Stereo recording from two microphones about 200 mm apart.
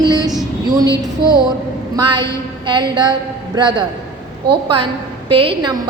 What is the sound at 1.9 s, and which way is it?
A woman's voice, 20° right (ahead or behind).